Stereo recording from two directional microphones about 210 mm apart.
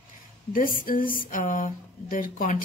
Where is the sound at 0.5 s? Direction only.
40° left (ahead or behind).